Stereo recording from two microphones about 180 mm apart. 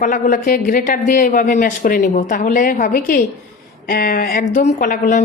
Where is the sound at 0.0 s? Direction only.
45° left (ahead or behind).